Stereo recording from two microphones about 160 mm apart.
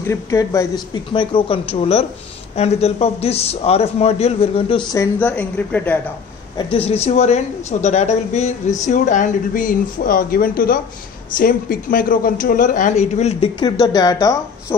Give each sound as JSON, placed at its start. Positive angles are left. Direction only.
{"t": 0.0, "sound": "a man's voice", "side_deg": 20}
{"t": 4.9, "sound": "speech", "side_deg": 15}
{"t": 6.5, "sound": "speech", "side_deg": 35}